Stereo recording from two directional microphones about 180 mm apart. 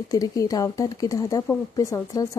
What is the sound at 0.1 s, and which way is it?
A woman's voice, 20° left (ahead or behind).